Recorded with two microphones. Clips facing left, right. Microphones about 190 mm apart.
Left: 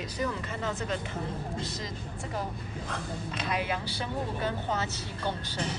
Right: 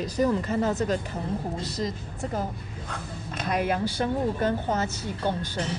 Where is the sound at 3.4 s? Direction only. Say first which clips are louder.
Right 7 dB; 45° right (ahead or behind).